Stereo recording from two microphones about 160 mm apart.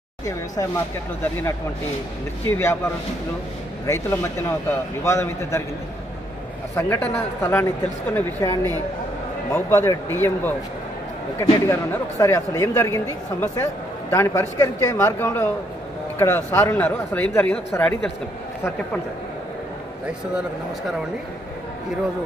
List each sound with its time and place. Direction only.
0.6 s speech: 15° left (ahead or behind)
2.5 s speech: 15° left (ahead or behind)
6.7 s speech: 15° left (ahead or behind)
11.7 s speech: 15° left (ahead or behind)